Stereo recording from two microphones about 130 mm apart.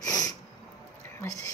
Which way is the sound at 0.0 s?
25° left (ahead or behind).